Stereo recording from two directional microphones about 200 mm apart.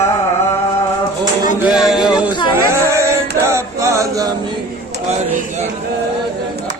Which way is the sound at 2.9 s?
15° right (ahead or behind).